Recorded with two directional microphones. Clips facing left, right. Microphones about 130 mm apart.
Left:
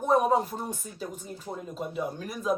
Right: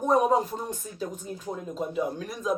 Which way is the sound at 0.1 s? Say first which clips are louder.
Right 1 dB; 5° left (ahead or behind).